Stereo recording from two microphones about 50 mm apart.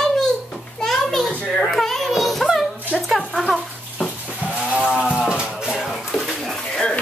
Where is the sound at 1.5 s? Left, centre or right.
Centre.